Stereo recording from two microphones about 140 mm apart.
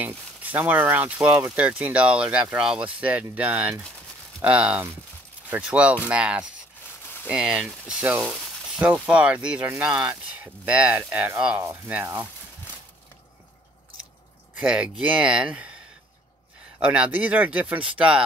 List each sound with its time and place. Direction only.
0.0 s speech: 10° right (ahead or behind)
14.6 s speech: 5° right (ahead or behind)
16.8 s speech: 10° right (ahead or behind)